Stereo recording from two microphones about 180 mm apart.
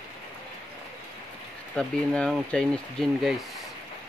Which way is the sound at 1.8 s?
5° left (ahead or behind).